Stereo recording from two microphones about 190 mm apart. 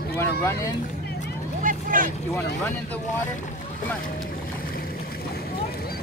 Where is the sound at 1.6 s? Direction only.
45° right (ahead or behind).